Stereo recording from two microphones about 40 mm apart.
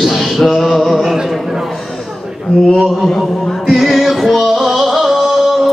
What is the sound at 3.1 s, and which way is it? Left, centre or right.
Speech, centre.